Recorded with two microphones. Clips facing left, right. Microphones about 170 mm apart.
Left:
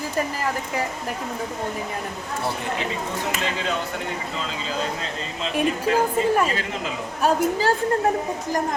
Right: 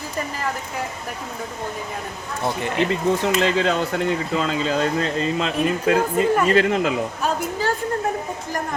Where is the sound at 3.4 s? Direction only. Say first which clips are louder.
Right 6 dB; 60° right (ahead or behind).